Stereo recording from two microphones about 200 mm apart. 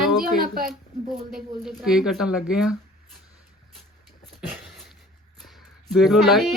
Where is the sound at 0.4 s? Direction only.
45° right (ahead or behind).